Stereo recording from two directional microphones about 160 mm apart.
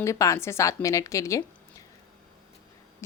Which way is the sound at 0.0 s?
20° left (ahead or behind).